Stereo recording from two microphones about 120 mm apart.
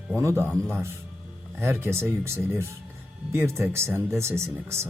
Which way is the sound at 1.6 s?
20° right (ahead or behind).